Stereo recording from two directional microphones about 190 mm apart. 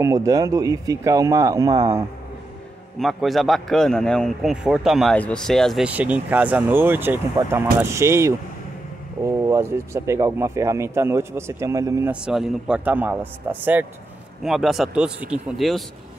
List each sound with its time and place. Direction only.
0.0 s speech: 15° right (ahead or behind)
3.0 s a man's voice: centre (ahead or behind)
12.3 s a man's voice: 5° right (ahead or behind)